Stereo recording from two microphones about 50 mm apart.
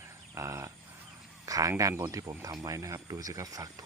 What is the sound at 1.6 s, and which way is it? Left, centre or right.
Speech, right.